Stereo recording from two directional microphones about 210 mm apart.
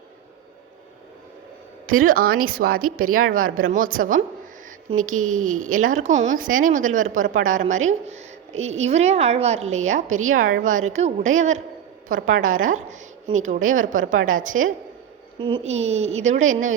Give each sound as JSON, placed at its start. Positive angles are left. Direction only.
{"t": 1.9, "sound": "a woman's voice", "side_deg": -40}
{"t": 15.4, "sound": "speech", "side_deg": -25}